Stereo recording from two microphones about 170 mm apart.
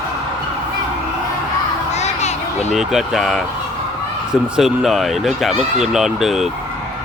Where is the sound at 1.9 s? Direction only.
40° left (ahead or behind).